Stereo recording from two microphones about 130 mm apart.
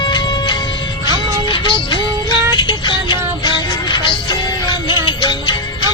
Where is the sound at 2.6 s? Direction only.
35° left (ahead or behind).